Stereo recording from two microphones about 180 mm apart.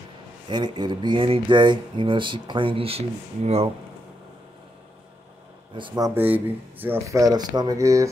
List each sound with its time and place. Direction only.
0.5 s speech: 25° right (ahead or behind)
5.8 s speech: 25° right (ahead or behind)
6.1 s speech: 10° right (ahead or behind)